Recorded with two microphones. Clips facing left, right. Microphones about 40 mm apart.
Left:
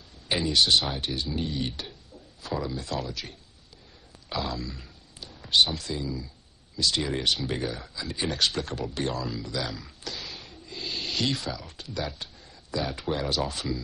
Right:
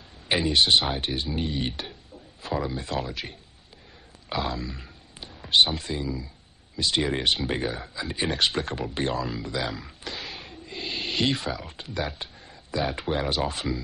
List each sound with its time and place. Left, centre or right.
0.3 s speech: right